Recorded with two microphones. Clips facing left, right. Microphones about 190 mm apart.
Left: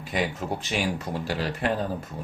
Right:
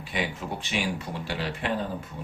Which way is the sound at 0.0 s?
45° left (ahead or behind).